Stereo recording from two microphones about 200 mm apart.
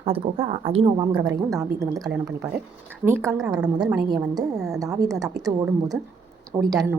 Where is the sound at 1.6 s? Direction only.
15° right (ahead or behind).